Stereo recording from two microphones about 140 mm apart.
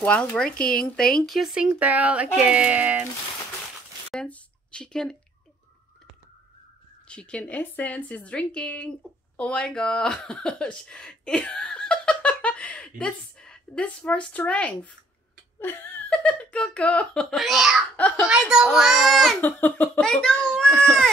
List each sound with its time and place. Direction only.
0.0 s speech: 10° left (ahead or behind)
0.6 s speech: 90° left
0.8 s speech: 5° left (ahead or behind); by 3.1 s 10° right (ahead or behind)
4.1 s a sound: 5° left (ahead or behind)
7.1 s speech: 5° left (ahead or behind)
17.9 s speech: 10° left (ahead or behind)
18.2 s a child's voice: 5° right (ahead or behind)
19.4 s speech: 15° left (ahead or behind)